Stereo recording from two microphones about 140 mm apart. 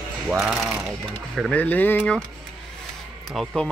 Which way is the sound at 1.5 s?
10° left (ahead or behind).